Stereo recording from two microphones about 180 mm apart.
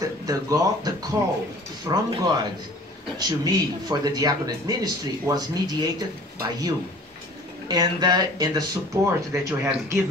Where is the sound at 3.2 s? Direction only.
20° right (ahead or behind).